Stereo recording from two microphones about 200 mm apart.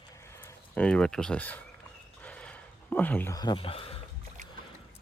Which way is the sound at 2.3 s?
5° left (ahead or behind).